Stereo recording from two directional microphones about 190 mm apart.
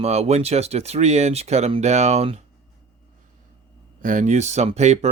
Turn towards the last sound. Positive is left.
turn(degrees=-35)  # may be behind; listen again after turning